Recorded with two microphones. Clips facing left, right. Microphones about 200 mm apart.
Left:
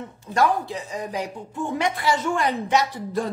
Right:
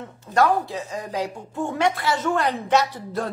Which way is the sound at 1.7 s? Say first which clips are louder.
Even; 15° left (ahead or behind).